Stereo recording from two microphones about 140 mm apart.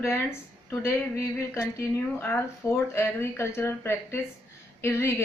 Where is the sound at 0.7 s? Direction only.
20° left (ahead or behind).